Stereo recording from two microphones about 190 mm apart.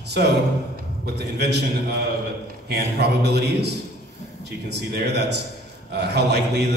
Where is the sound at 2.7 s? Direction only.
60° right (ahead or behind).